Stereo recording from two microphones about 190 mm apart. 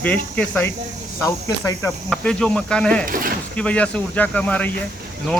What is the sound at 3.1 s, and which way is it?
Speech, 50° right (ahead or behind).